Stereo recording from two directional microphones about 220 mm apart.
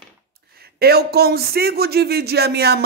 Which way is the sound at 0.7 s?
45° right (ahead or behind).